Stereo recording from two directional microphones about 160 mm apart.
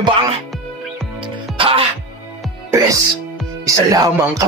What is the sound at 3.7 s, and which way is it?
Speech, 20° right (ahead or behind).